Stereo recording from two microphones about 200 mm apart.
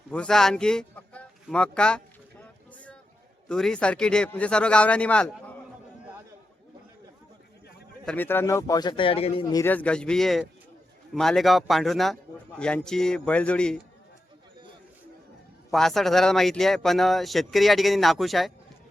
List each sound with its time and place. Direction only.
0.1 s speech: 5° left (ahead or behind)
2.4 s a sound: 5° left (ahead or behind)
3.5 s speech: 5° left (ahead or behind)
8.0 s speech: 10° left (ahead or behind)
15.7 s speech: centre (ahead or behind)